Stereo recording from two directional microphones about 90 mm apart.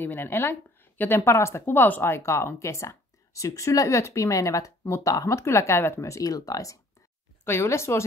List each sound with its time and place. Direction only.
0.0 s a woman's voice: 25° left (ahead or behind); by 6.8 s 40° left (ahead or behind)
7.4 s speech: 30° left (ahead or behind)